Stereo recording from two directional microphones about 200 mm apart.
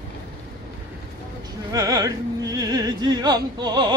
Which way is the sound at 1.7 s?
20° right (ahead or behind).